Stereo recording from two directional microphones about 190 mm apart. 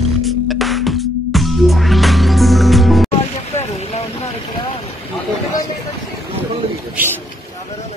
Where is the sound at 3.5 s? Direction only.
35° left (ahead or behind).